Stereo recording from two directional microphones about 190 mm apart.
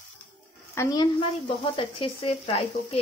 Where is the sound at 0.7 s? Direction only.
20° left (ahead or behind).